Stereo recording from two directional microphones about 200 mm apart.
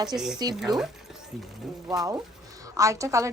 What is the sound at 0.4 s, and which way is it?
Speech, 20° right (ahead or behind).